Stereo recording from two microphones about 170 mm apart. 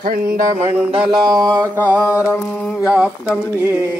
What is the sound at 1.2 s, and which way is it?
Speech, 20° right (ahead or behind).